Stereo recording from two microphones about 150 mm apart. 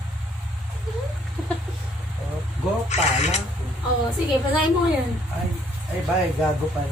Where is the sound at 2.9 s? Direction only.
45° left (ahead or behind).